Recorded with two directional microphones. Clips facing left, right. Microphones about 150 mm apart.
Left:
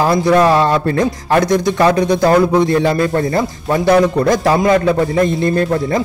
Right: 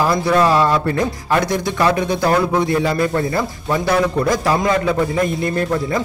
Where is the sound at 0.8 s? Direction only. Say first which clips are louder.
Left 4 dB; 40° left (ahead or behind).